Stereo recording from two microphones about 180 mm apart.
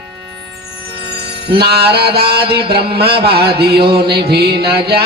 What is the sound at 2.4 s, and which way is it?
Mantra, 30° right (ahead or behind).